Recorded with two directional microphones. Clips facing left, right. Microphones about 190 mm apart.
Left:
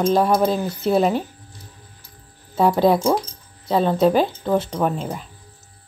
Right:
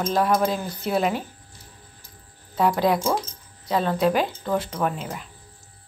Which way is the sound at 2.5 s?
30° left (ahead or behind).